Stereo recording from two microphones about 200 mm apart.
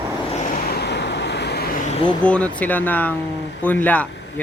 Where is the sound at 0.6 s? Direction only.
55° left (ahead or behind).